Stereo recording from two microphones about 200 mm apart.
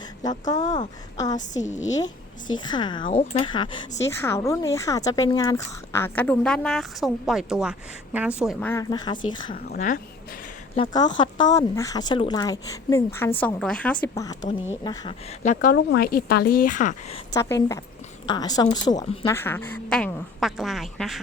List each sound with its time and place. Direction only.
0.2 s speech: 20° left (ahead or behind)
1.4 s a woman's voice: 35° left (ahead or behind)
2.6 s speech: 20° left (ahead or behind); by 8.5 s 5° right (ahead or behind)
8.6 s speech: 15° left (ahead or behind)
9.6 s a woman's voice: 40° left (ahead or behind)
10.8 s speech: 20° left (ahead or behind)
14.8 s speech: 25° left (ahead or behind)
15.7 s a woman's voice: 50° left (ahead or behind)
17.3 s speech: 15° left (ahead or behind)